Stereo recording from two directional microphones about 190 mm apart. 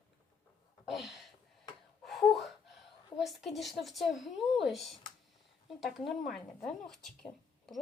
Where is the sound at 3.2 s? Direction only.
Centre (ahead or behind).